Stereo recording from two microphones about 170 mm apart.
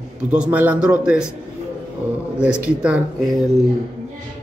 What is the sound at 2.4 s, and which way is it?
Speech, 5° right (ahead or behind).